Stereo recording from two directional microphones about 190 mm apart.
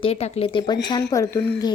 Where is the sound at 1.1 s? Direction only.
15° left (ahead or behind).